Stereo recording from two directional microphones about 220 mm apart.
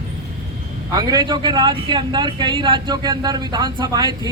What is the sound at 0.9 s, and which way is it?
Speech, 20° right (ahead or behind).